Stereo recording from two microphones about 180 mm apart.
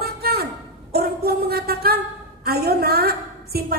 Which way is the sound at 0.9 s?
60° right (ahead or behind).